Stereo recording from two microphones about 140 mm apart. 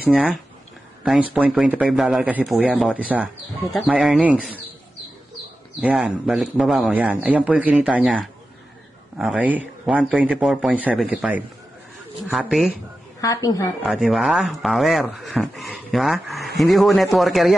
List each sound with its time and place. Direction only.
0.0 s speech: 5° right (ahead or behind)
5.8 s speech: 10° right (ahead or behind)
9.2 s speech: 5° right (ahead or behind)
13.2 s a woman's voice: 25° left (ahead or behind)
13.8 s speech: centre (ahead or behind)